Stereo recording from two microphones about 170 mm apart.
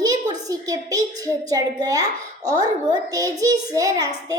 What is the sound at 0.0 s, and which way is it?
A woman's voice, 20° right (ahead or behind).